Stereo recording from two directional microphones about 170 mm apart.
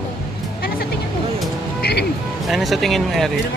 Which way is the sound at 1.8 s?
70° left (ahead or behind).